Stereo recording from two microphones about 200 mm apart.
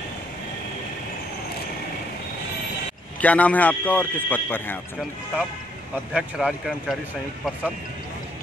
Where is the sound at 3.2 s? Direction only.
5° left (ahead or behind).